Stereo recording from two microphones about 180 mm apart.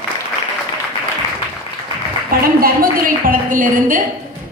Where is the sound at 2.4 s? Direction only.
55° right (ahead or behind).